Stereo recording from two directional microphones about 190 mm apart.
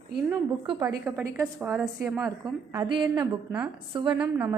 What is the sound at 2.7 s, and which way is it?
A woman's voice, 25° right (ahead or behind).